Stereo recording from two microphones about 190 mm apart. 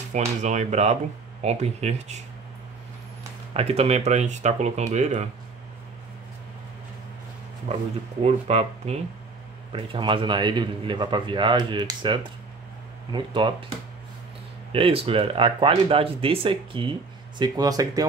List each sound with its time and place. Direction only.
0.1 s speech: 40° right (ahead or behind)
3.5 s speech: 30° right (ahead or behind)
7.7 s a man's voice: 35° right (ahead or behind); by 18.0 s 20° right (ahead or behind)